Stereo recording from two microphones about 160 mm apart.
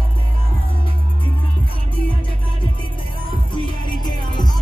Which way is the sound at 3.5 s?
30° left (ahead or behind).